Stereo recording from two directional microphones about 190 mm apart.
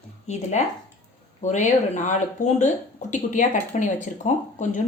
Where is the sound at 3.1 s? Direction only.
40° left (ahead or behind).